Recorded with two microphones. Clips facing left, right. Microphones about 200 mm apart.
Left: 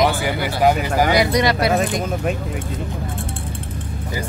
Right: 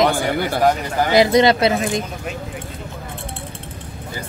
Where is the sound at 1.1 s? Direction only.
25° right (ahead or behind).